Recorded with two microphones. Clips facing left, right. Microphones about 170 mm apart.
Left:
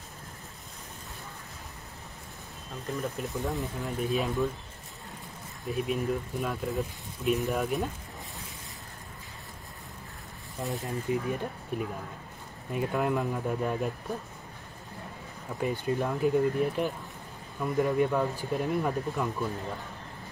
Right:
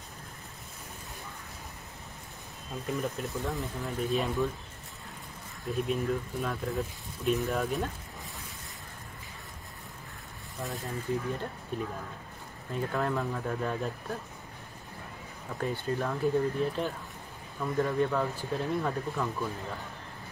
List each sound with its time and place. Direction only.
2.9 s speech: centre (ahead or behind)
5.7 s speech: centre (ahead or behind)
10.6 s speech: 20° left (ahead or behind)
15.5 s speech: 15° left (ahead or behind)